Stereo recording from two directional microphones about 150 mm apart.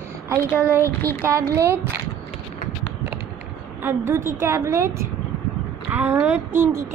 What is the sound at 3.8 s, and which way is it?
Speech, 15° right (ahead or behind).